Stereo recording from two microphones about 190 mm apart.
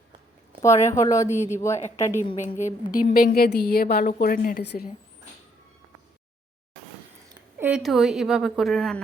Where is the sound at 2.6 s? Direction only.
45° left (ahead or behind).